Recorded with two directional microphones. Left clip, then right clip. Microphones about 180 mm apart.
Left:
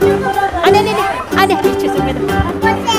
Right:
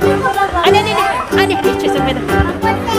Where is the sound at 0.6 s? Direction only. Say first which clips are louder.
Left 1 dB; 40° left (ahead or behind).